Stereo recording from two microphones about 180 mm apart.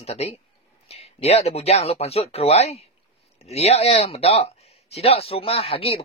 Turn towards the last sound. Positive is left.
turn(degrees=35)  # may be behind; listen again after turning